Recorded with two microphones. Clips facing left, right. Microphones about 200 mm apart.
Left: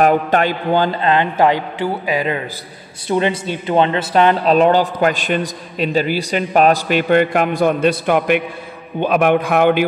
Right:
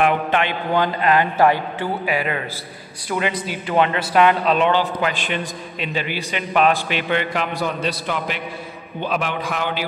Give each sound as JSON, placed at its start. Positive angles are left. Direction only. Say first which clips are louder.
{"t": 0.0, "sound": "a man's voice", "louder": "left 5 dB", "side_deg": 40}